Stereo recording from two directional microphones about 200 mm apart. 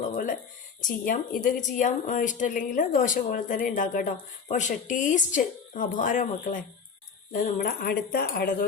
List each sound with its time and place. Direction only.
0.8 s a woman's voice: 45° left (ahead or behind)